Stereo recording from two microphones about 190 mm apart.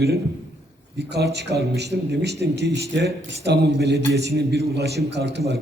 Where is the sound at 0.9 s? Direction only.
60° right (ahead or behind).